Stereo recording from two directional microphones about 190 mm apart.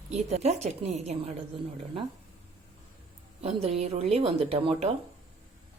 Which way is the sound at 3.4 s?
30° right (ahead or behind).